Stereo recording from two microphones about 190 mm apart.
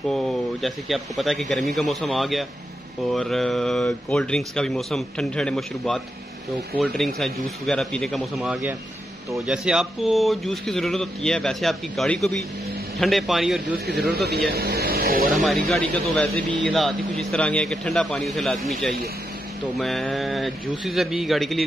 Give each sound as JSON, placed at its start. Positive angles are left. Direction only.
{"t": 0.1, "sound": "speech", "side_deg": 0}
{"t": 13.8, "sound": "speech", "side_deg": -55}
{"t": 15.3, "sound": "speech", "side_deg": 0}